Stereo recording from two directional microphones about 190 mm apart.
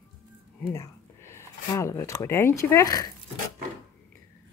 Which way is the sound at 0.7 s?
15° left (ahead or behind).